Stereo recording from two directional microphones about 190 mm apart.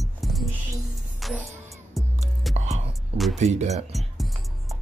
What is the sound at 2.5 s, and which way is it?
Music, 35° right (ahead or behind).